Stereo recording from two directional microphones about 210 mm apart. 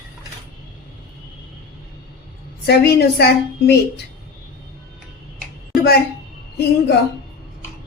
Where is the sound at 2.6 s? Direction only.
50° left (ahead or behind).